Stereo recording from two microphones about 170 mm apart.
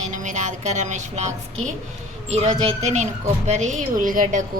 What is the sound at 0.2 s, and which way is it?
A woman's voice, 45° right (ahead or behind).